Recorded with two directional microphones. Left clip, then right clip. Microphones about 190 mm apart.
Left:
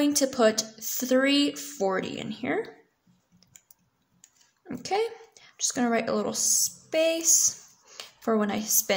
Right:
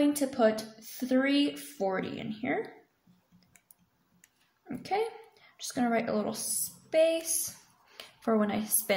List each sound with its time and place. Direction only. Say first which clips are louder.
0.0 s speech: left 4 dB; 30° left (ahead or behind)
4.6 s a woman's voice: left 4 dB; 20° left (ahead or behind)